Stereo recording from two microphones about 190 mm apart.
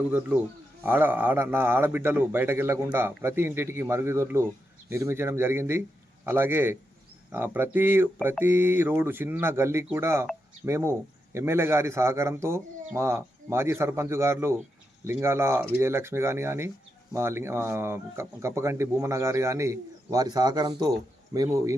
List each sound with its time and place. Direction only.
0.1 s speech: 10° right (ahead or behind)